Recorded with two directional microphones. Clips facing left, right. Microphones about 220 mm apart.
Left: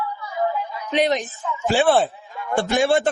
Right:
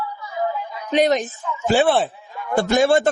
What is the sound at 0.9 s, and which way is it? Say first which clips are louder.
Speech: right 3 dB; 45° right (ahead or behind).